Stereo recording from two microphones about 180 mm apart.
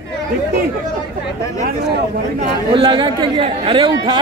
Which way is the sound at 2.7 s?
25° right (ahead or behind).